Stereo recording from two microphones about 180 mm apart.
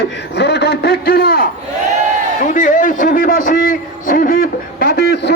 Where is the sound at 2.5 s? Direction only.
45° left (ahead or behind).